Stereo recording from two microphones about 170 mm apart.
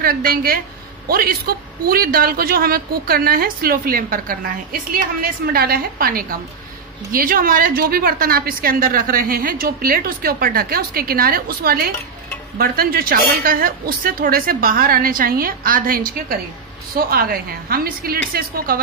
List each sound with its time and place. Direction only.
0.0 s a woman's voice: 60° right (ahead or behind)